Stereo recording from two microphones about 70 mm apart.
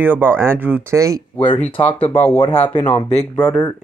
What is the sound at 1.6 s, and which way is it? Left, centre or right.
Speech, left.